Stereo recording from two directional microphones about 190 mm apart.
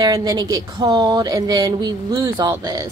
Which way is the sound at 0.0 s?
20° right (ahead or behind).